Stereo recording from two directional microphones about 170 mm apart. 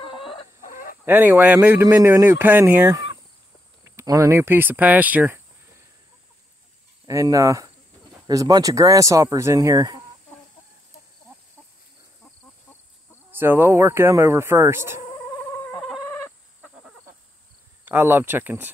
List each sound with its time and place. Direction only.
0.0 s chicken: 30° left (ahead or behind)
0.6 s fowl: 55° left (ahead or behind)
1.0 s speech: 10° right (ahead or behind)
7.1 s speech: 20° right (ahead or behind)
13.3 s speech: 15° right (ahead or behind)
15.3 s fowl: 10° left (ahead or behind)
17.8 s speech: 10° right (ahead or behind)